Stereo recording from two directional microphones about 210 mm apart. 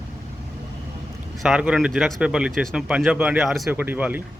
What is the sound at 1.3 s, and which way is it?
A man's voice, centre (ahead or behind).